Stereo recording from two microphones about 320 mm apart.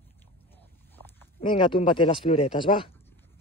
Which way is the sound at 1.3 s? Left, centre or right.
Centre.